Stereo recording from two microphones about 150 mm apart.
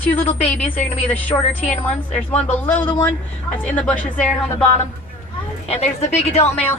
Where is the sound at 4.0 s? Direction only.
60° left (ahead or behind).